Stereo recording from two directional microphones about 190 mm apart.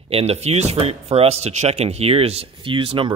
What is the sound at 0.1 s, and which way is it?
Speech, 30° right (ahead or behind).